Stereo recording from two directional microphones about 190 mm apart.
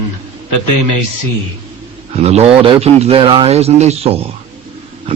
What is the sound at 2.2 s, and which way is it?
Speech, 35° right (ahead or behind).